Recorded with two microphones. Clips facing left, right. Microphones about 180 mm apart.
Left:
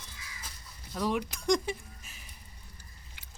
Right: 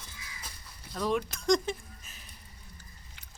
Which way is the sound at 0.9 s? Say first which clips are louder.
Right 1 dB; 15° left (ahead or behind).